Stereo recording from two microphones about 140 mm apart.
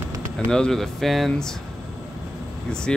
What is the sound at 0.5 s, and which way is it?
Speech, 5° left (ahead or behind).